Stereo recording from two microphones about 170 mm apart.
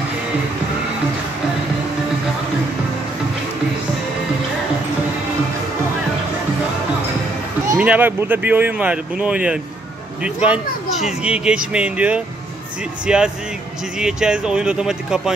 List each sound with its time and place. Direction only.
7.7 s speech: 10° right (ahead or behind)
10.9 s a child's voice: 40° left (ahead or behind)
11.2 s speech: 5° right (ahead or behind)